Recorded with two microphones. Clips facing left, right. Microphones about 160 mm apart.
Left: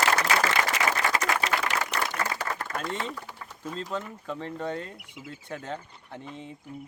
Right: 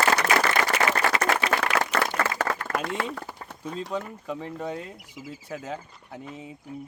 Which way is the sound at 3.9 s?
10° right (ahead or behind).